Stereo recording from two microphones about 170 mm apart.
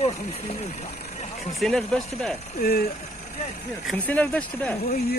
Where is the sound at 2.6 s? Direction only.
60° left (ahead or behind).